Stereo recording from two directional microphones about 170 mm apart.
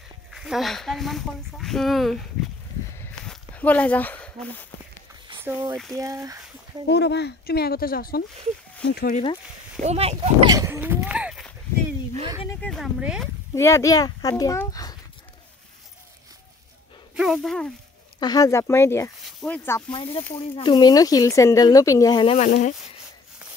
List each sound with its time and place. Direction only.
0.3 s speech: centre (ahead or behind)
3.3 s speech: 10° left (ahead or behind)
5.4 s speech: 15° right (ahead or behind)
6.9 s speech: 80° left; by 9.1 s 65° left (ahead or behind)
9.1 s speech: 30° left (ahead or behind)
9.8 s speech: 40° right (ahead or behind)
10.5 s a sound: 15° right (ahead or behind)
12.4 s a sound: 5° left (ahead or behind)
13.6 s speech: 15° left (ahead or behind)
17.1 s speech: 5° right (ahead or behind)
18.2 s speech: 20° left (ahead or behind)
19.2 s speech: 5° left (ahead or behind)
19.9 s speech: 30° left (ahead or behind)
22.4 s speech: 50° left (ahead or behind)